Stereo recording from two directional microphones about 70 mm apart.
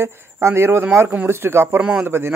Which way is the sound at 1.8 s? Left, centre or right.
Centre.